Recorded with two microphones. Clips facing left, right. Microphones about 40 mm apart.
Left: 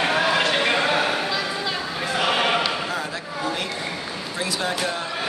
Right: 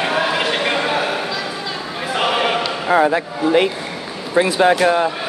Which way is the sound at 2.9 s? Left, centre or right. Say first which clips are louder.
Right 14 dB; right.